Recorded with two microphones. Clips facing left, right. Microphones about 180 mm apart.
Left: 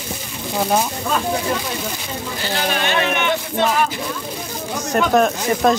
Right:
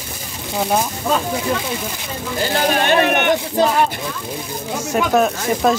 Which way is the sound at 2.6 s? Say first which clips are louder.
Right 5 dB; 45° right (ahead or behind).